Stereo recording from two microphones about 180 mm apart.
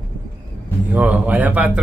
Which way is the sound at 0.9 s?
10° right (ahead or behind).